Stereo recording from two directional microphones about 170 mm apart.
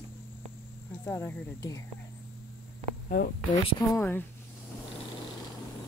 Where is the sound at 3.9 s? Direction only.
10° left (ahead or behind).